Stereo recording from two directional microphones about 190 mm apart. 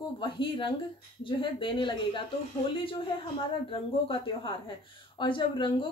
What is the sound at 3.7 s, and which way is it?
A woman's voice, 25° left (ahead or behind).